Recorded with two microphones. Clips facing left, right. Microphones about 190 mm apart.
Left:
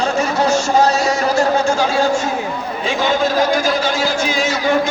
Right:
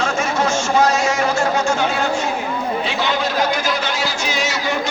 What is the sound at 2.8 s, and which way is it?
A man's voice, 45° left (ahead or behind).